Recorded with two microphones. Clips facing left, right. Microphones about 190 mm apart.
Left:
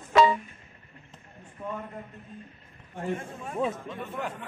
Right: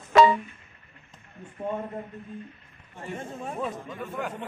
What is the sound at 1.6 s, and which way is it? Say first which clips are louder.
Speech: right 5 dB; 30° right (ahead or behind).